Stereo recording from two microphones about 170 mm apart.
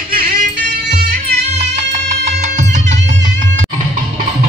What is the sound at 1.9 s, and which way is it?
Music, 40° right (ahead or behind).